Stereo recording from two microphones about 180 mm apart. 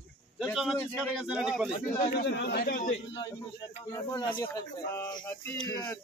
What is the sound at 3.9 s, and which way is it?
Speech, 20° left (ahead or behind).